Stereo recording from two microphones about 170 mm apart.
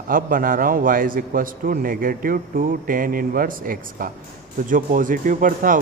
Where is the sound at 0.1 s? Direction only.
55° right (ahead or behind).